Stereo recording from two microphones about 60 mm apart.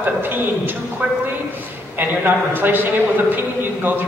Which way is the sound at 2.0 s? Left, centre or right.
Right.